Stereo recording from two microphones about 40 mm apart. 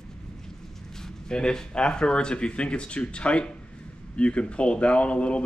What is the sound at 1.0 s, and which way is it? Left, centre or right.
Speech, centre.